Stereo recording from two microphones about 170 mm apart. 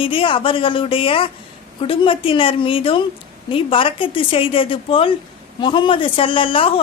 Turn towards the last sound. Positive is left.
turn(degrees=30)  # may be behind; listen again after turning